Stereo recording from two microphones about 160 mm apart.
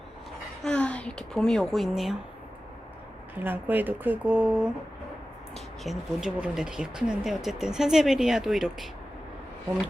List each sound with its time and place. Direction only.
0.6 s speech: 5° left (ahead or behind)
3.3 s speech: 10° right (ahead or behind)